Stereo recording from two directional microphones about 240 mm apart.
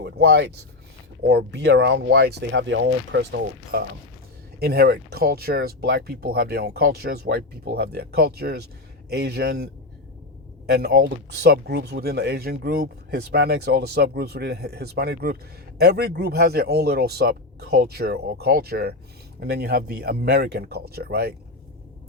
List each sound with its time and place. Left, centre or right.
0.0 s speech: right
10.7 s speech: right